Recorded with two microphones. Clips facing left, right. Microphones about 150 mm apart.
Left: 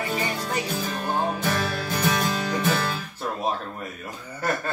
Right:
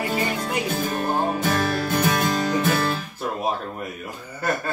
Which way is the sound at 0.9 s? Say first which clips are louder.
Right 2 dB; 45° right (ahead or behind).